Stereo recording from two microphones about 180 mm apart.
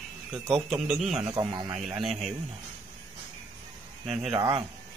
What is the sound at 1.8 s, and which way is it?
Speech, centre (ahead or behind).